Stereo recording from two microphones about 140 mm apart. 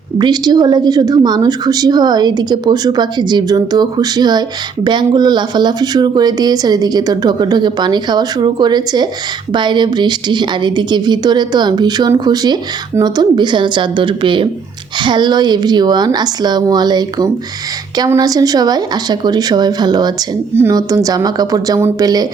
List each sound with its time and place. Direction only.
0.2 s a woman's voice: 30° right (ahead or behind)
21.8 s speech: 15° right (ahead or behind)
22.0 s a woman's voice: 30° right (ahead or behind)